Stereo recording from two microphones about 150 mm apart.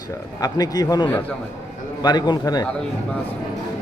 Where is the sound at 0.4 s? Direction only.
25° left (ahead or behind).